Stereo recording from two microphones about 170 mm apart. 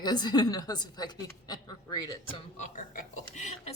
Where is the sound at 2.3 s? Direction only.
45° left (ahead or behind).